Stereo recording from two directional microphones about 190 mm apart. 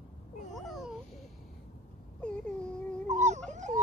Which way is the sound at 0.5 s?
Centre (ahead or behind).